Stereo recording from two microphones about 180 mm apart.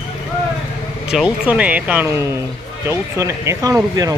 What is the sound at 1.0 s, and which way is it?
Speech, 5° right (ahead or behind).